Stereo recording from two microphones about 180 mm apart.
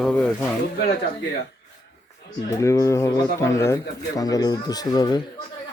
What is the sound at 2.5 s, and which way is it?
Speech, 15° left (ahead or behind).